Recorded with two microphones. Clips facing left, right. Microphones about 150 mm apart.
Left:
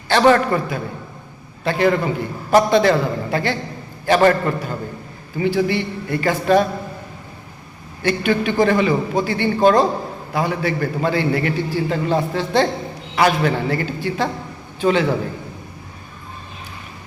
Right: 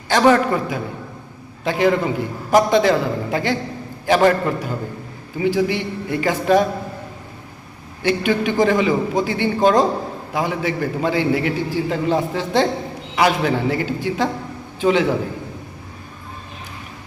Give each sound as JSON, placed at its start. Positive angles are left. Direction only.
{"t": 0.1, "sound": "a man's voice", "side_deg": -10}
{"t": 8.0, "sound": "a man's voice", "side_deg": -15}